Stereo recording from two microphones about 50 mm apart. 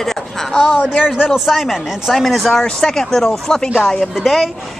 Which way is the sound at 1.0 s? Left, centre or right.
Centre.